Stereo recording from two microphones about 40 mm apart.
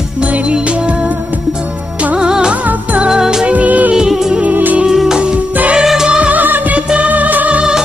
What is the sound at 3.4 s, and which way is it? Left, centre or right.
Music, right.